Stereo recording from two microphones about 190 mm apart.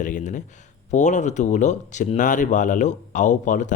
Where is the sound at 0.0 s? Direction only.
40° left (ahead or behind).